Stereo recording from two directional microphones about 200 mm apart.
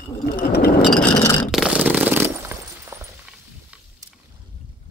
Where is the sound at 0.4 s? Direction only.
50° left (ahead or behind).